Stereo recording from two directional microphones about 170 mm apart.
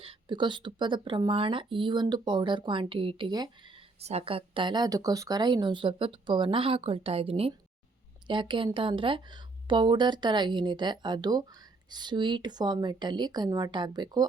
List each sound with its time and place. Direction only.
0.0 s speech: 30° right (ahead or behind)